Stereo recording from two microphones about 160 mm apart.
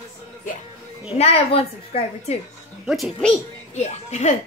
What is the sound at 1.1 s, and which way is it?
A woman's voice, 35° left (ahead or behind).